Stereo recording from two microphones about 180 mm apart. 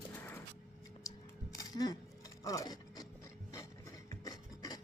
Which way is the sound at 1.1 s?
20° left (ahead or behind).